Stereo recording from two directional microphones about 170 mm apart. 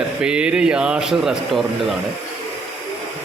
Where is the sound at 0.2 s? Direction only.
5° right (ahead or behind).